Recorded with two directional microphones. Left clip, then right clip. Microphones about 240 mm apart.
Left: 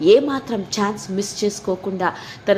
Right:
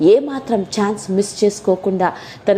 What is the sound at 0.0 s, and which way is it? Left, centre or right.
A woman's voice, centre.